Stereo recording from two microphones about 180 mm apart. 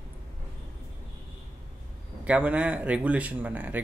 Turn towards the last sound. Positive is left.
turn(degrees=-10)  # may be behind; listen again after turning